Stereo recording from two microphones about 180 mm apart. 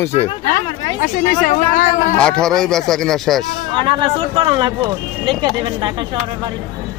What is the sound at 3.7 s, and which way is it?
Speech, 25° right (ahead or behind).